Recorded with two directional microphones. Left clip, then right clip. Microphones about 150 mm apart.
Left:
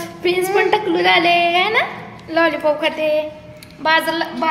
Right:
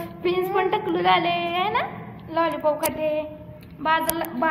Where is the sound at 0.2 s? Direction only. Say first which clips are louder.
Left 6 dB; 60° left (ahead or behind).